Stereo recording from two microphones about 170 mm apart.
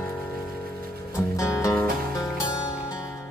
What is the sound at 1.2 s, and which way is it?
Music, 20° left (ahead or behind).